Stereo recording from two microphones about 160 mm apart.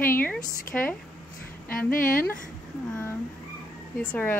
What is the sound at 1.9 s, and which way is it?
Speech, 60° left (ahead or behind).